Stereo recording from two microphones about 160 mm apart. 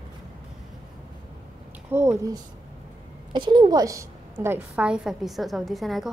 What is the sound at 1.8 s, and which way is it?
Speech, 15° right (ahead or behind).